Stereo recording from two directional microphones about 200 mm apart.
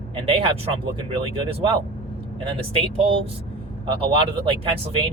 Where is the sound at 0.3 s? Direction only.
25° right (ahead or behind).